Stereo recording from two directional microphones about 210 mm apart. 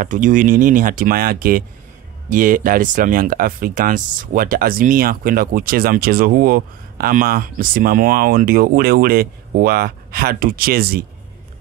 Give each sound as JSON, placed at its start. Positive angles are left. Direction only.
{"t": 0.0, "sound": "speech", "side_deg": -40}